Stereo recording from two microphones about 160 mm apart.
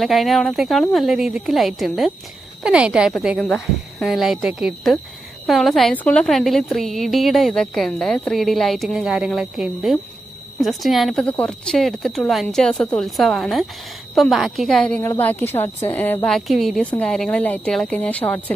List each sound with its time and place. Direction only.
0.0 s a woman's voice: centre (ahead or behind)